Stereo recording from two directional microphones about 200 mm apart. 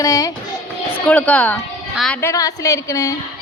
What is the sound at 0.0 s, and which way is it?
A woman's voice, 15° left (ahead or behind).